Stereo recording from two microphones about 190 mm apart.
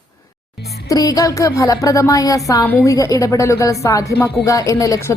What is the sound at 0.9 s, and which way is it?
Speech, 20° left (ahead or behind).